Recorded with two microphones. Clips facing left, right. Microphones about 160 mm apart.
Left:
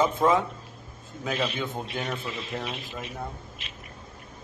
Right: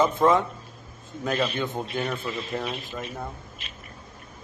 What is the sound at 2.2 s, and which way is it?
Speech, 45° right (ahead or behind).